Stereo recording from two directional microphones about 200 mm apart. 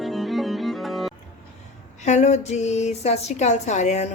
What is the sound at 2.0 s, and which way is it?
Speech, 35° left (ahead or behind).